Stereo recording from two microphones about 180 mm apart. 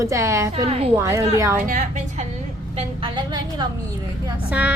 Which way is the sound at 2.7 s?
25° right (ahead or behind).